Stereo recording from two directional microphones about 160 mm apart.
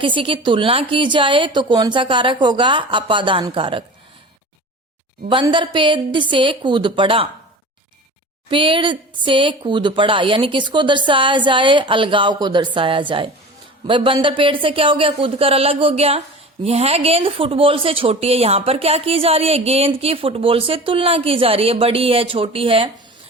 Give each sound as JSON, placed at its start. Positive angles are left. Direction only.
{"t": 0.0, "sound": "speech", "side_deg": -30}
{"t": 5.3, "sound": "speech", "side_deg": -30}
{"t": 8.4, "sound": "speech", "side_deg": -30}